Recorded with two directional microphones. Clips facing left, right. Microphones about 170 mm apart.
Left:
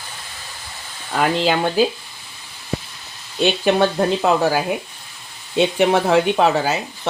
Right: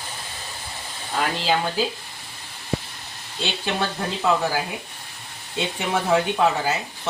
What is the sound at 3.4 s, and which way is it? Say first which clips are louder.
Speech: left 10 dB; 60° left (ahead or behind).